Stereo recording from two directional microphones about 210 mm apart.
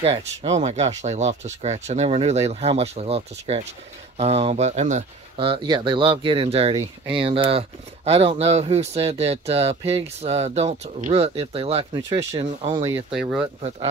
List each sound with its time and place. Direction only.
0.0 s speech: 30° right (ahead or behind)
13.1 s speech: 5° right (ahead or behind)
13.6 s speech: 30° right (ahead or behind)